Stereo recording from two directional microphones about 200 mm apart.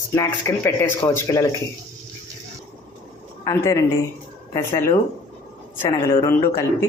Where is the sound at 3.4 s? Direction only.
15° left (ahead or behind).